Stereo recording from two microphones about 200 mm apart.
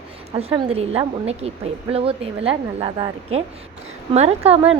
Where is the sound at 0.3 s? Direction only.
30° right (ahead or behind).